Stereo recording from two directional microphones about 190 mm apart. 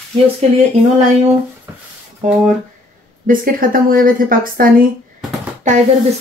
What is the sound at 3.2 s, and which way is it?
Speech, 50° right (ahead or behind).